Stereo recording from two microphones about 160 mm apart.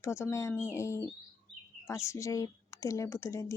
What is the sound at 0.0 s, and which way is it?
Speech, 15° left (ahead or behind).